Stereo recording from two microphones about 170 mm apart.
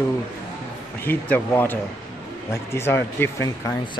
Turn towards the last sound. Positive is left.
turn(degrees=15)  # may be behind; listen again after turning